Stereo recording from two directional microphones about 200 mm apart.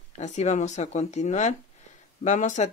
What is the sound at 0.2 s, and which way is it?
Speech, 35° left (ahead or behind).